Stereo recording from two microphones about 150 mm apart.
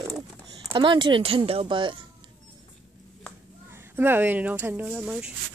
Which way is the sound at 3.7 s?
15° right (ahead or behind).